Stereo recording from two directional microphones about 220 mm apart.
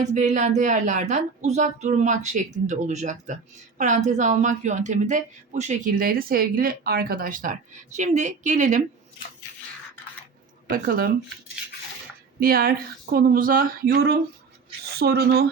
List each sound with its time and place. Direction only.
0.0 s speech: 30° right (ahead or behind)
10.7 s speech: 40° right (ahead or behind)
12.4 s speech: 40° right (ahead or behind)